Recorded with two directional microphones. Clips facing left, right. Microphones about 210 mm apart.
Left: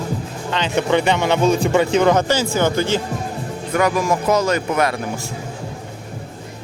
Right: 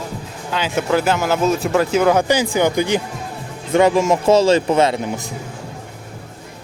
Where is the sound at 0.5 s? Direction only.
5° right (ahead or behind).